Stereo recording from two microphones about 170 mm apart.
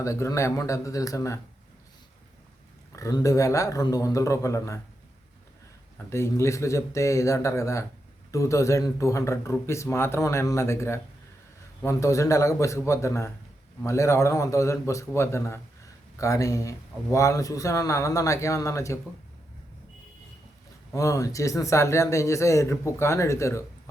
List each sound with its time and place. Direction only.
0.0 s speech: 20° left (ahead or behind)
2.9 s speech: 20° left (ahead or behind)
6.1 s speech: 15° left (ahead or behind)
20.9 s speech: 20° left (ahead or behind)